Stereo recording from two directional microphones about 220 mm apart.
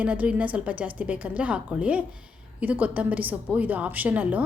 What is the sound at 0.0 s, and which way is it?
A woman's voice, 5° right (ahead or behind).